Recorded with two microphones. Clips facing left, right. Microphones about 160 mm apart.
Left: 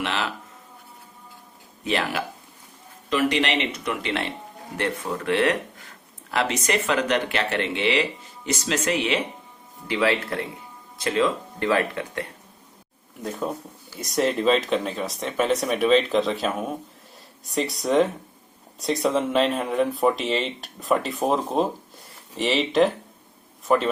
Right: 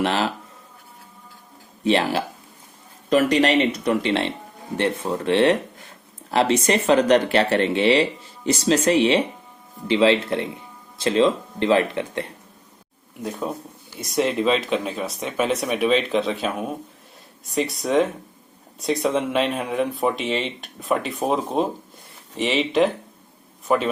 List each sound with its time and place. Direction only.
0.0 s speech: 35° right (ahead or behind)
1.8 s speech: 30° right (ahead or behind)
3.1 s speech: 40° right (ahead or behind); by 12.2 s 25° right (ahead or behind)
13.2 s speech: centre (ahead or behind)